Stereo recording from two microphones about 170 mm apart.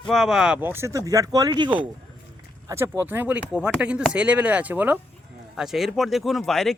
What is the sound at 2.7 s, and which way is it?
Speech, 15° right (ahead or behind).